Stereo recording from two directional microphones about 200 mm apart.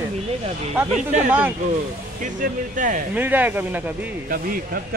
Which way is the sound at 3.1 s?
10° right (ahead or behind).